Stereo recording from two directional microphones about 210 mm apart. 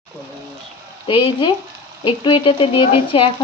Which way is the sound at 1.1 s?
25° left (ahead or behind).